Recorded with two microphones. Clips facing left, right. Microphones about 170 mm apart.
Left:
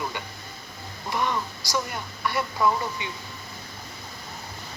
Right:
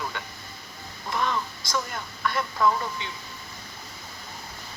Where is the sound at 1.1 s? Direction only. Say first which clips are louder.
Left 1 dB; 15° left (ahead or behind).